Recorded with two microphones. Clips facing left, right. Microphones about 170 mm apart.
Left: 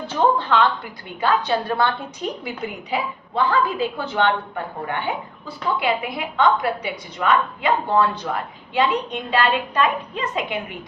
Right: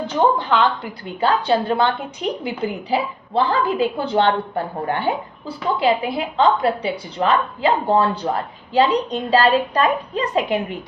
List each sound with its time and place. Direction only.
0.1 s a woman's voice: 15° right (ahead or behind)
1.2 s a woman's voice: 30° right (ahead or behind)